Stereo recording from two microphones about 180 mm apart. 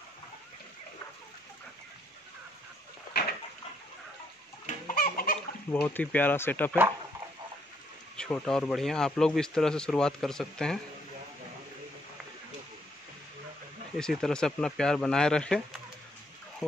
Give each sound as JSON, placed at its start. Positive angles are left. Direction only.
{"t": 3.1, "sound": "a sound", "side_deg": 65}
{"t": 4.6, "sound": "chicken", "side_deg": 50}
{"t": 5.7, "sound": "speech", "side_deg": 10}
{"t": 8.2, "sound": "speech", "side_deg": 5}
{"t": 13.9, "sound": "speech", "side_deg": 5}